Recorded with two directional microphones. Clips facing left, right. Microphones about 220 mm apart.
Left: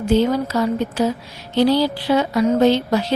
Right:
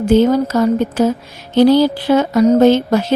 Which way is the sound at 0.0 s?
45° right (ahead or behind).